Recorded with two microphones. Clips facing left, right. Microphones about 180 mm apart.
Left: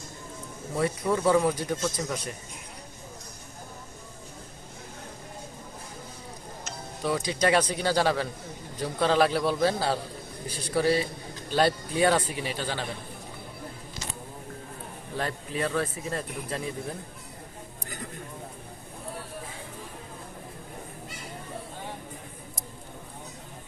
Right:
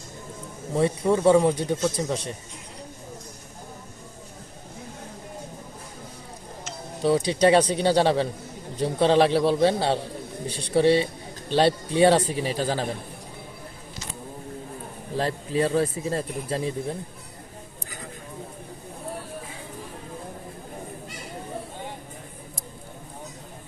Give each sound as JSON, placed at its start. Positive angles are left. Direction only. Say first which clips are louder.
{"t": 0.7, "sound": "a man's voice", "louder": "right 5 dB", "side_deg": -25}
{"t": 7.0, "sound": "a man's voice", "louder": "right 7 dB", "side_deg": -30}
{"t": 15.1, "sound": "speech", "louder": "right 6 dB", "side_deg": -30}